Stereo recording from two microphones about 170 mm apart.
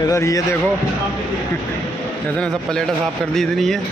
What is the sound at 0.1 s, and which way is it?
Speech, 15° left (ahead or behind).